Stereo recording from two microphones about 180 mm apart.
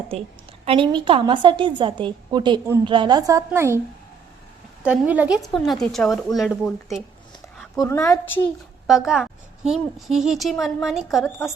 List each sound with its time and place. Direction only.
0.6 s a woman's voice: 30° right (ahead or behind); by 3.8 s 15° right (ahead or behind)
4.8 s a woman's voice: 10° right (ahead or behind)
7.8 s a woman's voice: 15° left (ahead or behind)
8.9 s a woman's voice: centre (ahead or behind)